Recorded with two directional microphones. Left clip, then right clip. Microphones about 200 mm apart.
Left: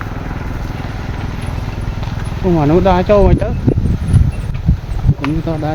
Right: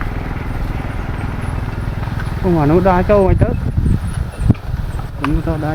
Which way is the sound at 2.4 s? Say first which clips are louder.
Left 1 dB; 15° left (ahead or behind).